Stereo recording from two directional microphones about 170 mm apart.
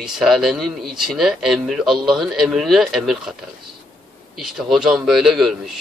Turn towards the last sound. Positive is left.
turn(degrees=0)  # may be behind; listen again after turning